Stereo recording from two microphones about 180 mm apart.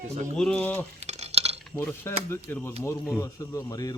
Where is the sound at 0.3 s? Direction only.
5° left (ahead or behind).